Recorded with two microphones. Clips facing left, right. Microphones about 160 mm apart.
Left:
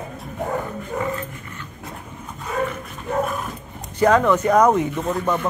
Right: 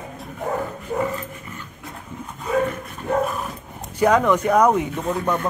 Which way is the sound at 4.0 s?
10° right (ahead or behind).